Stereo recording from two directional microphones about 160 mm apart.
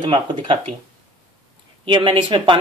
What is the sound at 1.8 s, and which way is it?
Speech, 30° right (ahead or behind).